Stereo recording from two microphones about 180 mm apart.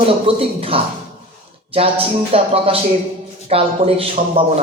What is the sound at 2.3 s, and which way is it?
Speech, 30° right (ahead or behind).